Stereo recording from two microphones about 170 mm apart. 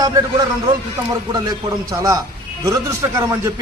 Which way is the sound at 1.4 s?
20° right (ahead or behind).